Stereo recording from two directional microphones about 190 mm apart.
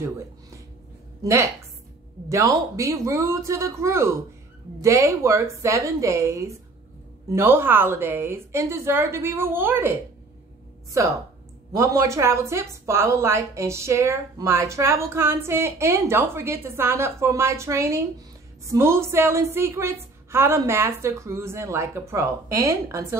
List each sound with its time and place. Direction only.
1.2 s a woman's voice: 15° right (ahead or behind)
10.9 s a woman's voice: 15° right (ahead or behind)